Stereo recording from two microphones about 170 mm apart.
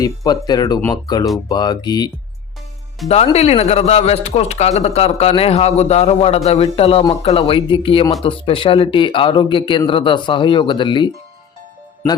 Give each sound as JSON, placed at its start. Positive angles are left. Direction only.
{"t": 0.3, "sound": "speech", "side_deg": 25}
{"t": 3.0, "sound": "speech", "side_deg": 0}
{"t": 3.3, "sound": "a man's voice", "side_deg": 35}